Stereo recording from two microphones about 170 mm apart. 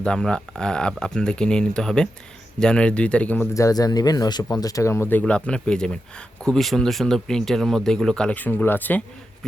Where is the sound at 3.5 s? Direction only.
20° left (ahead or behind).